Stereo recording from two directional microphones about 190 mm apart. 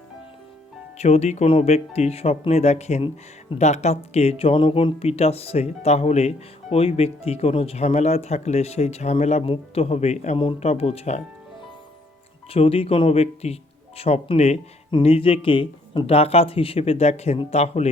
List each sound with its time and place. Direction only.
0.9 s speech: 35° left (ahead or behind)
12.5 s speech: 30° left (ahead or behind)